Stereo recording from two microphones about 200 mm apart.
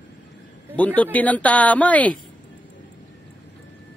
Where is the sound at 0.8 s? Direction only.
5° left (ahead or behind).